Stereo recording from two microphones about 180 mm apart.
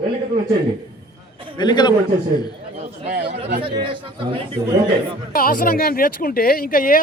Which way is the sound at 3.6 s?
30° right (ahead or behind).